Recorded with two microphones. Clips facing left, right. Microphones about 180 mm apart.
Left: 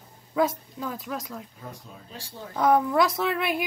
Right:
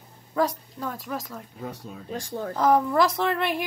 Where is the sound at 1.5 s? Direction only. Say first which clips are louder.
Right 6 dB; 70° right (ahead or behind).